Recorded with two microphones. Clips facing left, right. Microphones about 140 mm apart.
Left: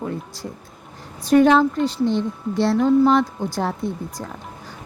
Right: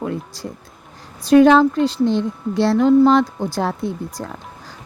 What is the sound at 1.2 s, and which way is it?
A woman's voice, 90° right.